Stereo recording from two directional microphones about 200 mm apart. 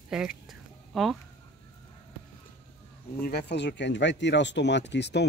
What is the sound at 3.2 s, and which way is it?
Speech, 55° left (ahead or behind).